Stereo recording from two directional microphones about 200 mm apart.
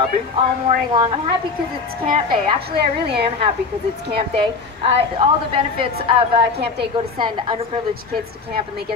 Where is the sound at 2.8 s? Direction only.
55° right (ahead or behind).